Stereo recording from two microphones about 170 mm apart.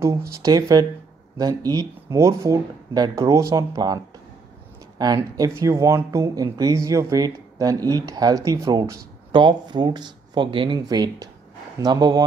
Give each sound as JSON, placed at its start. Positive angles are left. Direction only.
{"t": 0.3, "sound": "speech", "side_deg": -20}